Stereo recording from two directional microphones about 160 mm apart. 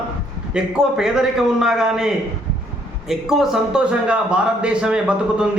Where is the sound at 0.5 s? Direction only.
5° right (ahead or behind).